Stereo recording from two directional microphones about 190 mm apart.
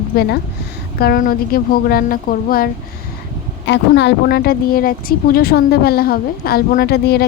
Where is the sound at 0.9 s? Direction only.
50° left (ahead or behind).